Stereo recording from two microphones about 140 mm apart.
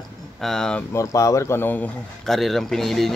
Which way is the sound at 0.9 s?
20° left (ahead or behind).